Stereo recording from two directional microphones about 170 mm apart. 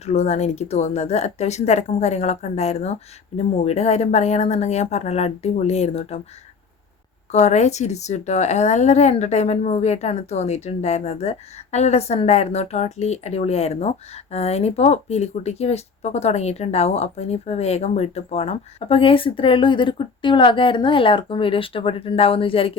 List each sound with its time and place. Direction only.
0.0 s a woman's voice: 40° left (ahead or behind)
7.3 s a woman's voice: 40° left (ahead or behind)